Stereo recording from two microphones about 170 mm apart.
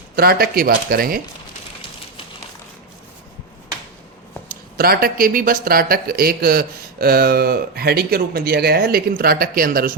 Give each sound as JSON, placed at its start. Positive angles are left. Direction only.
{"t": 0.2, "sound": "speech", "side_deg": -65}
{"t": 4.8, "sound": "speech", "side_deg": -60}